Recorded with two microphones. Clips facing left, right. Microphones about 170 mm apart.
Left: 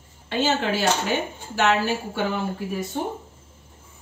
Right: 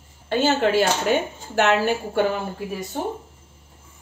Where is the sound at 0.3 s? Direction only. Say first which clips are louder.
Right 4 dB; 50° right (ahead or behind).